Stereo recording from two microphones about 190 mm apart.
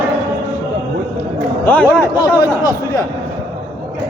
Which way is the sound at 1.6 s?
10° left (ahead or behind).